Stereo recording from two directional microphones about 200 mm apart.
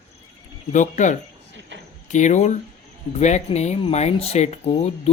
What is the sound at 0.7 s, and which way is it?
Speech, 40° left (ahead or behind).